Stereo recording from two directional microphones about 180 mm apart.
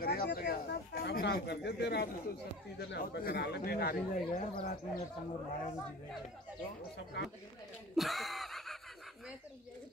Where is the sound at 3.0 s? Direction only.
55° left (ahead or behind).